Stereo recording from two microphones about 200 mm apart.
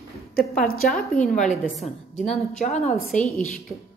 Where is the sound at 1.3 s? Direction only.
35° left (ahead or behind).